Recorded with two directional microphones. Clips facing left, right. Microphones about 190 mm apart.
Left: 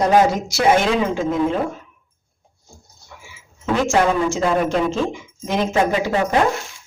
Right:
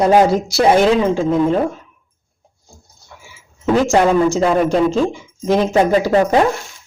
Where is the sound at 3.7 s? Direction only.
35° right (ahead or behind).